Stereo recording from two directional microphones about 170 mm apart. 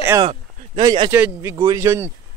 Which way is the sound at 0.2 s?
30° right (ahead or behind).